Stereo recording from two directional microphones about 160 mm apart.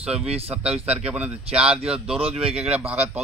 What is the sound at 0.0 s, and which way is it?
Speech, 5° right (ahead or behind).